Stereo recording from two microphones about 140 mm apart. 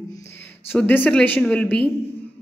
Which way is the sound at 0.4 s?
15° left (ahead or behind).